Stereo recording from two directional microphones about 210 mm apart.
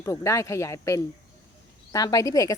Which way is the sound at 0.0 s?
15° left (ahead or behind).